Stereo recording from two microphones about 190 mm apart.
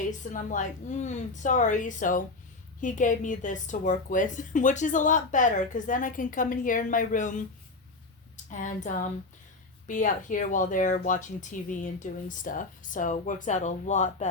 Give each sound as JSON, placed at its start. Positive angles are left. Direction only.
{"t": 0.0, "sound": "a woman's voice", "side_deg": 40}
{"t": 8.4, "sound": "a woman's voice", "side_deg": 40}